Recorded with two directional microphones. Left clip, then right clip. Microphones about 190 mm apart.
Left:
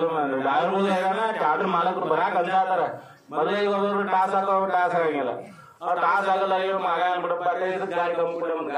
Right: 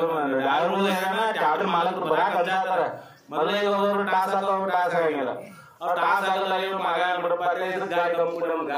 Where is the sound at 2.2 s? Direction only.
5° left (ahead or behind).